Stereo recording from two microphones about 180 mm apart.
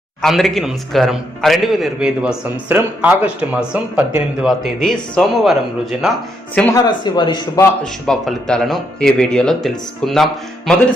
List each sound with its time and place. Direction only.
0.2 s a man's voice: centre (ahead or behind)
6.7 s speech: 20° left (ahead or behind)
8.0 s a man's voice: centre (ahead or behind)